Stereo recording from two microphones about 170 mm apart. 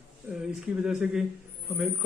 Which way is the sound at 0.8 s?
5° right (ahead or behind).